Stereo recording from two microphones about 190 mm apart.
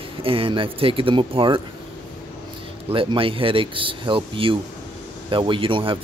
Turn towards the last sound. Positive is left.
turn(degrees=-25)  # may be behind; listen again after turning